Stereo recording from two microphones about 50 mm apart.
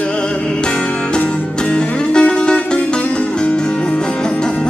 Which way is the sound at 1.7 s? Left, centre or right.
Centre.